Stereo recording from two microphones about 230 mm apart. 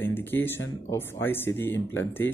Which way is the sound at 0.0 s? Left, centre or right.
Centre.